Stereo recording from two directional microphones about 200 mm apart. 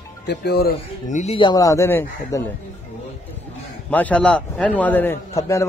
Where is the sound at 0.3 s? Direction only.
55° left (ahead or behind).